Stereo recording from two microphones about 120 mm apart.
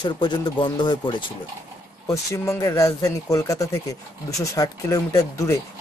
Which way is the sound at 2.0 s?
25° left (ahead or behind).